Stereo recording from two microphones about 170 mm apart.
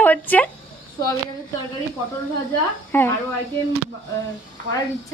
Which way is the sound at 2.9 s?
10° left (ahead or behind).